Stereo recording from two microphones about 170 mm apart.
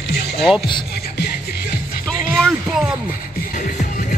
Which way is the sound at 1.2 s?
70° left (ahead or behind).